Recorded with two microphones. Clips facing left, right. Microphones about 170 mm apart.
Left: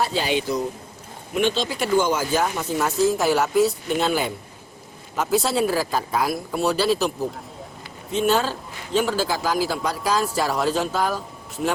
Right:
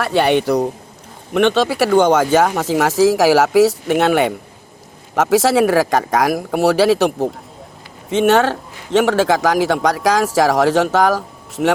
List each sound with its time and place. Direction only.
0.0 s a man's voice: 65° right (ahead or behind)